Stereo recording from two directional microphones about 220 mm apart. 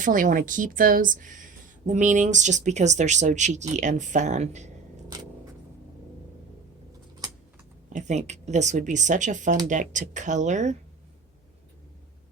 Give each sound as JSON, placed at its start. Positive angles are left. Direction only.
{"t": 0.0, "sound": "speech", "side_deg": -35}
{"t": 7.9, "sound": "speech", "side_deg": -30}